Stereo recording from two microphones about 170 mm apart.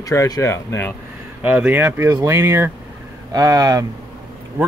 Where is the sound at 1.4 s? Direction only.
10° right (ahead or behind).